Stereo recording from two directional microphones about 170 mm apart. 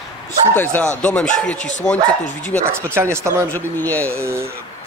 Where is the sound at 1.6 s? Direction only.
45° left (ahead or behind).